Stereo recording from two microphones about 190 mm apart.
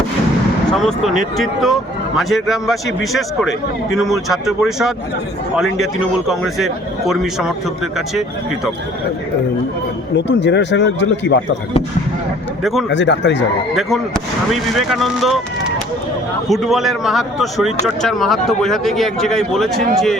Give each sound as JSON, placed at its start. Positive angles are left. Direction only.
{"t": 0.7, "sound": "a man's voice", "side_deg": 0}
{"t": 10.2, "sound": "speech", "side_deg": 65}
{"t": 12.9, "sound": "speech", "side_deg": 70}
{"t": 14.5, "sound": "a man's voice", "side_deg": 0}
{"t": 16.5, "sound": "a man's voice", "side_deg": 0}